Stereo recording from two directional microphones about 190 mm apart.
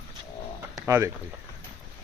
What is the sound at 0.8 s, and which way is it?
Speech, 15° right (ahead or behind).